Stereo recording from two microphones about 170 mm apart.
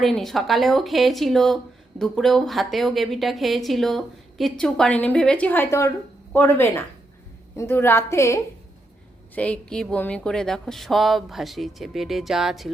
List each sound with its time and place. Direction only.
0.0 s a woman's voice: centre (ahead or behind)